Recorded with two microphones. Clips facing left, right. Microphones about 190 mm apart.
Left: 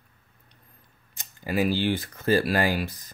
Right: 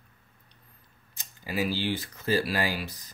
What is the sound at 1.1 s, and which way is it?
Speech, 50° left (ahead or behind).